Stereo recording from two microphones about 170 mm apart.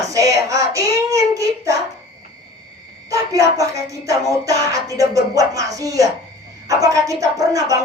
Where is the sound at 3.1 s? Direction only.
20° right (ahead or behind).